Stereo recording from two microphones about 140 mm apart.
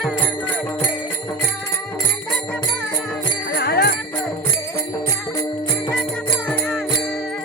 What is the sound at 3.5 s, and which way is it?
Jingle bell, 90° left.